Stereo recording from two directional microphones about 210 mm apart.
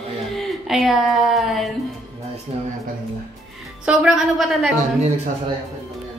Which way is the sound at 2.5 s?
30° right (ahead or behind).